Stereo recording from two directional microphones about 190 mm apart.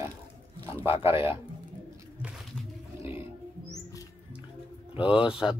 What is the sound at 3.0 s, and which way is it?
Wild animals, 10° right (ahead or behind).